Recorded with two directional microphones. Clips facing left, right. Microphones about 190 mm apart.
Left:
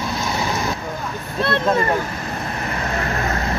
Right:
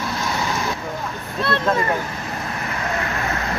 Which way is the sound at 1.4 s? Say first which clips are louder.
Left 2 dB; 20° left (ahead or behind).